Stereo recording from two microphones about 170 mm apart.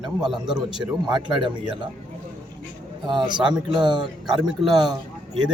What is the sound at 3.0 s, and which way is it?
Speech, 25° right (ahead or behind).